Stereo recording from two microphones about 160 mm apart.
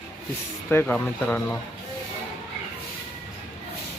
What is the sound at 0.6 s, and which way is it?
Speech, 10° left (ahead or behind).